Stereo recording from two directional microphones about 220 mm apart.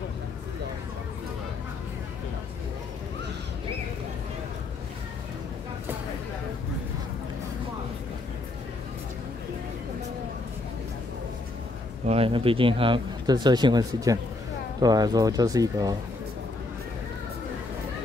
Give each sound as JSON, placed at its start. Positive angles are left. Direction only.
{"t": 12.1, "sound": "speech", "side_deg": -25}